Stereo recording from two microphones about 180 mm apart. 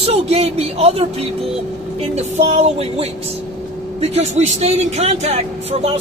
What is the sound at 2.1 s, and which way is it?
Speech, 40° right (ahead or behind).